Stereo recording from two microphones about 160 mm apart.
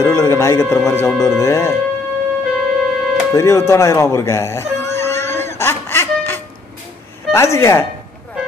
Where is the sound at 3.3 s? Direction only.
15° left (ahead or behind).